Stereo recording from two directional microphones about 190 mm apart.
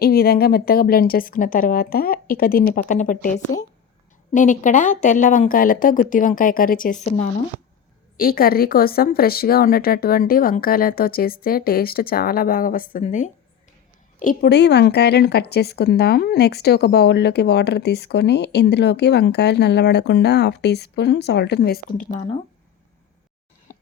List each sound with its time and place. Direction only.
0.0 s a woman's voice: 55° left (ahead or behind)
8.1 s a woman's voice: 50° left (ahead or behind)
14.2 s a woman's voice: 50° left (ahead or behind)